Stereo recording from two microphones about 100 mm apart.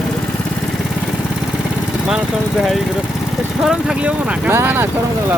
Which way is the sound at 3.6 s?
5° right (ahead or behind).